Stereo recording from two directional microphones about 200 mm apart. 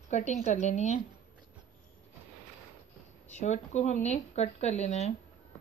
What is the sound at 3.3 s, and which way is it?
Speech, 35° left (ahead or behind).